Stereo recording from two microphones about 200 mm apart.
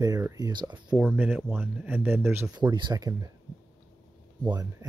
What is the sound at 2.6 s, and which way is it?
Speech, 20° right (ahead or behind).